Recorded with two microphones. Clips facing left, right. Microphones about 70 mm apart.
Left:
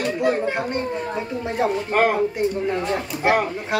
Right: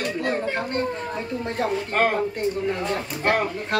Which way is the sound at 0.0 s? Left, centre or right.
Centre.